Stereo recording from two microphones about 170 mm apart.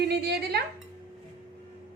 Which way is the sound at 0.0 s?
75° right (ahead or behind).